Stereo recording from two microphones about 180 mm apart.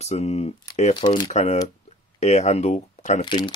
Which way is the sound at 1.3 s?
40° left (ahead or behind).